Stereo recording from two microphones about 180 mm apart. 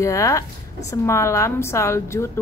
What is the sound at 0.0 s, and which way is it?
A woman's voice, 15° left (ahead or behind).